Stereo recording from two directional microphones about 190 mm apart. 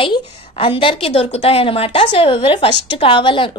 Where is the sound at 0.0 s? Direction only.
25° left (ahead or behind).